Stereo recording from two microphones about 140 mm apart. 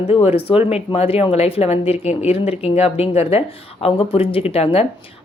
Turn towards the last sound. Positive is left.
turn(degrees=45)  # may be behind; listen again after turning